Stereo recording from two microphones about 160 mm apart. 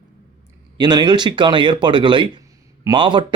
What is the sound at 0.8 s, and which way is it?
Speech, 25° right (ahead or behind).